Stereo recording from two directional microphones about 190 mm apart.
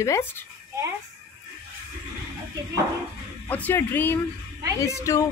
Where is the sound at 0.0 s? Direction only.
15° left (ahead or behind).